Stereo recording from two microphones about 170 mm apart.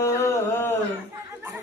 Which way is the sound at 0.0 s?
15° left (ahead or behind).